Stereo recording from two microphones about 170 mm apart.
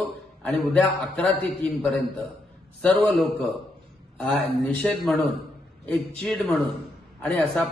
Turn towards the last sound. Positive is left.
turn(degrees=5)  # may be behind; listen again after turning